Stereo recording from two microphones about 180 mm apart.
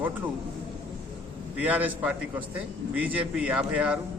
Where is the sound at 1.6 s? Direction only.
10° right (ahead or behind).